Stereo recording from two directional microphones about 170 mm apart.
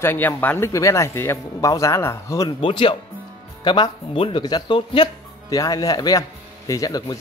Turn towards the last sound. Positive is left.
turn(degrees=20)  # may be behind; listen again after turning